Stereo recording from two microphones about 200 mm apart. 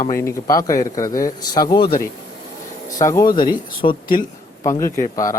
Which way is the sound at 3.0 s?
15° left (ahead or behind).